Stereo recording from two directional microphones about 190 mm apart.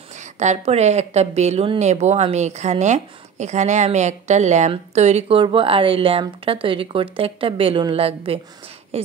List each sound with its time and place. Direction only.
0.1 s speech: 40° right (ahead or behind)